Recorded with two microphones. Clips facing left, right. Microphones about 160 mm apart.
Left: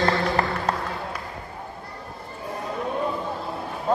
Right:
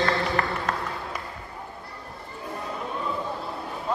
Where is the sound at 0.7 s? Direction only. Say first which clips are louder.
Left 3 dB; 35° left (ahead or behind).